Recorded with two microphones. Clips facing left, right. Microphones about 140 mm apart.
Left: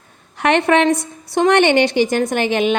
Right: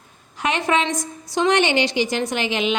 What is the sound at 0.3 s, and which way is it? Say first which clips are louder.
A woman's voice: left 7 dB; 65° left (ahead or behind).